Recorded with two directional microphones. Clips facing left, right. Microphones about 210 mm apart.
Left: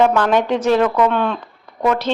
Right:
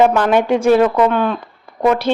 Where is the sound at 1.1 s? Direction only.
5° right (ahead or behind).